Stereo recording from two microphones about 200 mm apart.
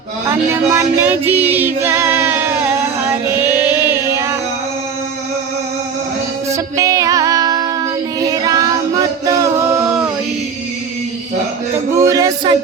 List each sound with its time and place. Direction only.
0.5 s music: 10° right (ahead or behind)
6.5 s music: 15° right (ahead or behind)
8.2 s child singing: 20° right (ahead or behind)
9.2 s music: 15° right (ahead or behind)
11.9 s music: 15° right (ahead or behind)